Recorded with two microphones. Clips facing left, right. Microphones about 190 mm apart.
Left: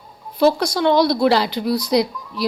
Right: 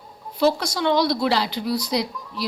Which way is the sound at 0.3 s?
60° left (ahead or behind).